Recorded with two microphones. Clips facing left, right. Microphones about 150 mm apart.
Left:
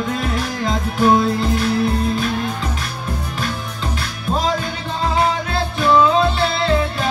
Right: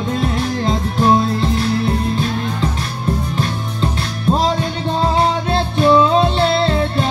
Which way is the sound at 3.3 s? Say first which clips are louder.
Right 3 dB; 30° right (ahead or behind).